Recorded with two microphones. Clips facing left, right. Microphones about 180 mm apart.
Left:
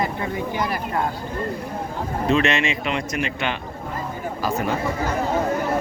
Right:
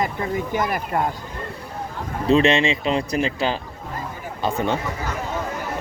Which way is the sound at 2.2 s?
30° right (ahead or behind).